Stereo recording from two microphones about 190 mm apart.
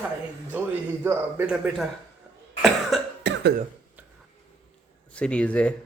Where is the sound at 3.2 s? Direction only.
65° right (ahead or behind).